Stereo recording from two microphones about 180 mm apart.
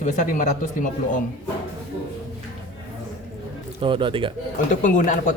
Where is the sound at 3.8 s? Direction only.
30° right (ahead or behind).